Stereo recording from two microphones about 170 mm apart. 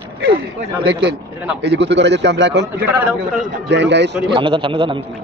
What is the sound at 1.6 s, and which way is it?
A man's voice, 90° right.